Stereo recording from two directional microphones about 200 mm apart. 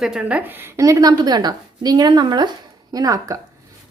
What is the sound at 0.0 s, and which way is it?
A woman's voice, 5° right (ahead or behind).